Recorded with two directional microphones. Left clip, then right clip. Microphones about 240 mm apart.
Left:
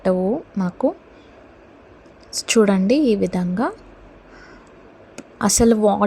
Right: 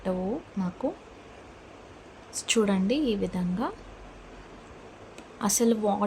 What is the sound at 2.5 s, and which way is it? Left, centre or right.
Speech, left.